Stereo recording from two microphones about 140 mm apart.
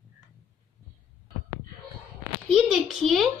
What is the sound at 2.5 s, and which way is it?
Speech, centre (ahead or behind).